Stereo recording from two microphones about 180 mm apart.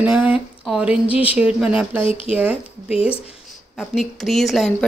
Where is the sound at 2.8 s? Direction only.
5° right (ahead or behind).